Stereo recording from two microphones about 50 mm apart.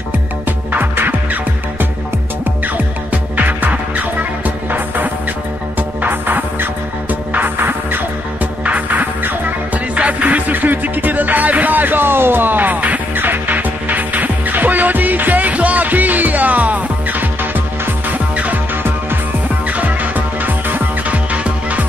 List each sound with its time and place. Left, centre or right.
0.5 s music: right
8.6 s music: right
19.7 s music: right
21.3 s music: right